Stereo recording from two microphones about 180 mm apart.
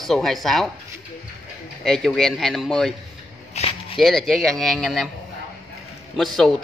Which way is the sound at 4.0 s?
Centre (ahead or behind).